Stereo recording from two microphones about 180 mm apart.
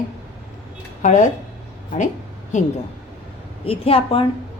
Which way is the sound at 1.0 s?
45° left (ahead or behind).